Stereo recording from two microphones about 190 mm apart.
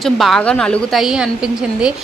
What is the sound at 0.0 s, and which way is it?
Speech, centre (ahead or behind).